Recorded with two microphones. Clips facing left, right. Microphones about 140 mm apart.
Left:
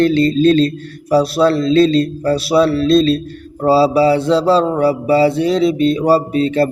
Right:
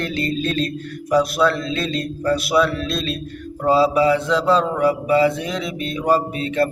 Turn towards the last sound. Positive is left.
turn(degrees=35)  # may be behind; listen again after turning